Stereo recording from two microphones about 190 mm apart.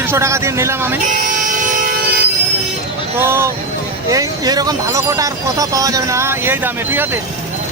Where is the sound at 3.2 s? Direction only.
15° right (ahead or behind).